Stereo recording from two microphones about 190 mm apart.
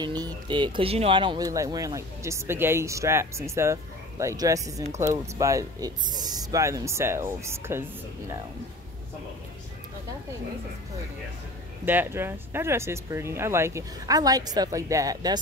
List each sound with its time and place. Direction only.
0.0 s speech: 25° right (ahead or behind)
11.8 s speech: 10° right (ahead or behind)